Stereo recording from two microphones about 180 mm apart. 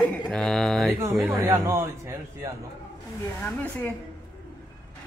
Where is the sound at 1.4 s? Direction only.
20° right (ahead or behind).